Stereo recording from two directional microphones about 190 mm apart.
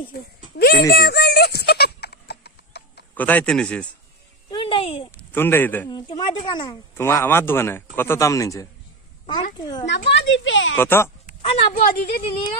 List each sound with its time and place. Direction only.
0.1 s a sound: 55° left (ahead or behind)
3.2 s a man's voice: 10° left (ahead or behind)
4.5 s speech: 25° left (ahead or behind)
5.3 s a man's voice: 10° left (ahead or behind)
5.9 s speech: 20° left (ahead or behind)
7.0 s a man's voice: 15° left (ahead or behind)
9.8 s speech: 65° left (ahead or behind); by 10.8 s 90° left
10.8 s a man's voice: 10° left (ahead or behind)
11.4 s a woman's voice: 30° left (ahead or behind)